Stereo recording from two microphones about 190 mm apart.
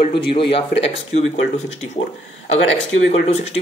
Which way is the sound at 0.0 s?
25° left (ahead or behind).